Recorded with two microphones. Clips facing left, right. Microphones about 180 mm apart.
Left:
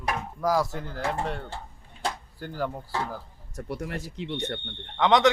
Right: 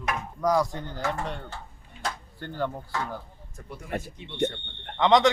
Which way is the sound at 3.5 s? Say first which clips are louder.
Left 2 dB; 75° left (ahead or behind).